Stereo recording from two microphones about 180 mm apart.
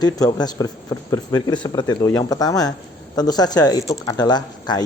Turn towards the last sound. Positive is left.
turn(degrees=25)  # may be behind; listen again after turning